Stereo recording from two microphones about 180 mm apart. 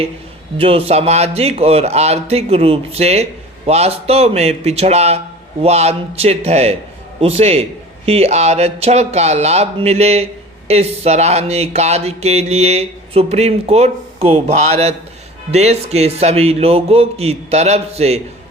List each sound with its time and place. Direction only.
0.6 s speech: 35° right (ahead or behind)